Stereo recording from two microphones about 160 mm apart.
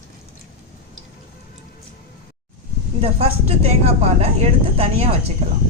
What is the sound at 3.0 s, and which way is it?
A woman's voice, 40° right (ahead or behind).